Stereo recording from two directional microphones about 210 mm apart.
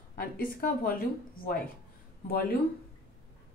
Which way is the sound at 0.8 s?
45° left (ahead or behind).